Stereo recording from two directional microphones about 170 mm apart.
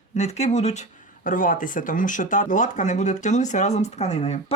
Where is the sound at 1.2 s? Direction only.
50° left (ahead or behind).